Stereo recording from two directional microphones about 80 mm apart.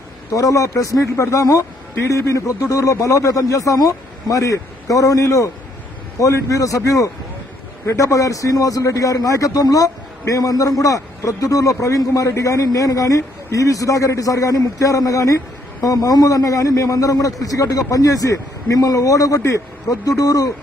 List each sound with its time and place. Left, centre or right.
0.3 s a man's voice: left